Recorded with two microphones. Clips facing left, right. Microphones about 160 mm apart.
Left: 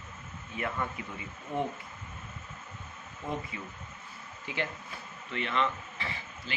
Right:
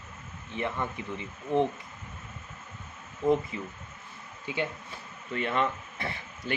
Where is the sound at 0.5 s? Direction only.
25° right (ahead or behind).